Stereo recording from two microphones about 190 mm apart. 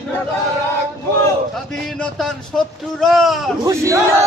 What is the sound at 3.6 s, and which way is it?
Speech, 15° right (ahead or behind).